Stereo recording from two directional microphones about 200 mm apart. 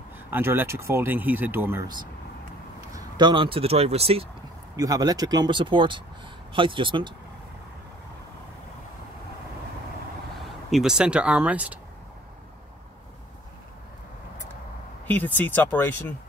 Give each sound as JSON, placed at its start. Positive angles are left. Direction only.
{"t": 0.3, "sound": "speech", "side_deg": -10}
{"t": 2.9, "sound": "speech", "side_deg": -20}
{"t": 4.7, "sound": "speech", "side_deg": -20}
{"t": 10.7, "sound": "speech", "side_deg": -5}
{"t": 15.0, "sound": "speech", "side_deg": 10}